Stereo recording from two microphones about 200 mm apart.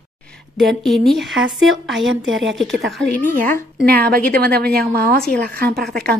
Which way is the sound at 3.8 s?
50° right (ahead or behind).